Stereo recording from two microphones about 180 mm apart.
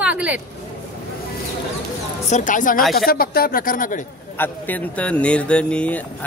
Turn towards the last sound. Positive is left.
turn(degrees=10)  # may be behind; listen again after turning